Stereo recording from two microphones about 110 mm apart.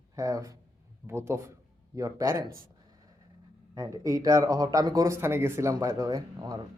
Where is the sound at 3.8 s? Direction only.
30° right (ahead or behind).